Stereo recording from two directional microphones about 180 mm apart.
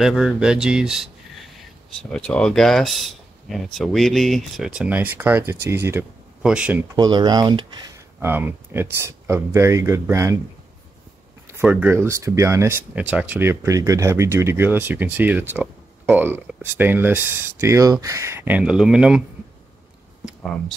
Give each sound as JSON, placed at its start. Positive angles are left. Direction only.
{"t": 0.0, "sound": "speech", "side_deg": 0}
{"t": 7.0, "sound": "speech", "side_deg": -25}
{"t": 11.5, "sound": "speech", "side_deg": -10}
{"t": 20.2, "sound": "speech", "side_deg": 0}